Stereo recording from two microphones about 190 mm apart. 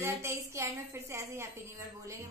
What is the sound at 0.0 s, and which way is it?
A woman's voice, 15° right (ahead or behind).